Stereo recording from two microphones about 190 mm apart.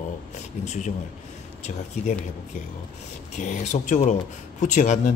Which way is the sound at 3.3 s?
40° left (ahead or behind).